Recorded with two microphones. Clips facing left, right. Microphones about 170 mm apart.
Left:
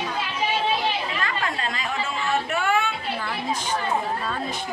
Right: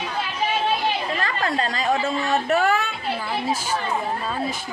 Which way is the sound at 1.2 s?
35° right (ahead or behind).